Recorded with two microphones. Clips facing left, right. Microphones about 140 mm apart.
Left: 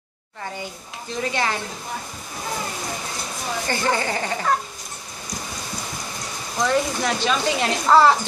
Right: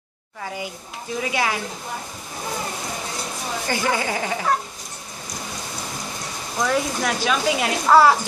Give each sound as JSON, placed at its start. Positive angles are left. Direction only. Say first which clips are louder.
{"t": 1.2, "sound": "speech", "louder": "even", "side_deg": -10}
{"t": 3.6, "sound": "speech", "louder": "even", "side_deg": -10}
{"t": 6.6, "sound": "speech", "louder": "left 1 dB", "side_deg": -5}